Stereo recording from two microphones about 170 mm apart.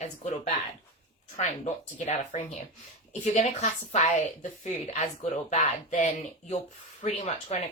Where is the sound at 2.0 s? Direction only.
45° left (ahead or behind).